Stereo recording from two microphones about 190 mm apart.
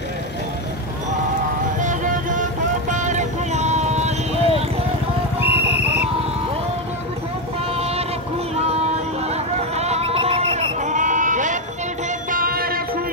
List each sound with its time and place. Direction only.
1.8 s music: 40° right (ahead or behind)
5.4 s music: 10° right (ahead or behind)
7.7 s a sound: 30° right (ahead or behind)
9.3 s sheep: 35° right (ahead or behind)
12.3 s music: 50° right (ahead or behind)